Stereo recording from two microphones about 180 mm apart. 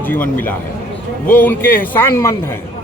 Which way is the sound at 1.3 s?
10° left (ahead or behind).